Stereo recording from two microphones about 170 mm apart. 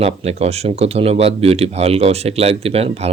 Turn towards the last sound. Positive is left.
turn(degrees=-35)  # may be behind; listen again after turning